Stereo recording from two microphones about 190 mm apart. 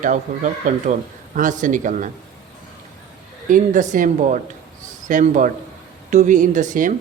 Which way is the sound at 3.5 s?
45° right (ahead or behind).